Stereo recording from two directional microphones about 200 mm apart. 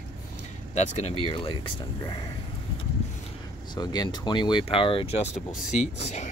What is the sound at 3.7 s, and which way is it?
Speech, 20° left (ahead or behind).